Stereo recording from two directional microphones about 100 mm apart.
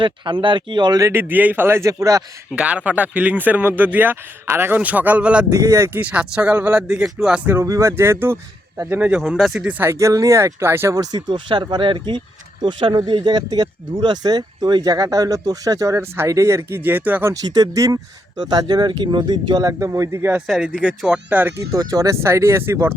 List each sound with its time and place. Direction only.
0.0 s speech: 55° right (ahead or behind)
1.0 s speech: 20° right (ahead or behind)
2.6 s speech: 10° right (ahead or behind)
5.5 s speech: 35° right (ahead or behind); by 7.4 s 5° right (ahead or behind)
7.4 s speech: 25° right (ahead or behind)
17.3 s speech: 40° right (ahead or behind)
18.4 s speech: 50° right (ahead or behind)
19.6 s speech: 30° right (ahead or behind)
20.8 s speech: 10° left (ahead or behind)
21.2 s speech: 15° right (ahead or behind)
21.7 s speech: 35° right (ahead or behind)